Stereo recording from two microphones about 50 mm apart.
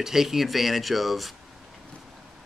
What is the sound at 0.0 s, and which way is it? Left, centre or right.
Speech, centre.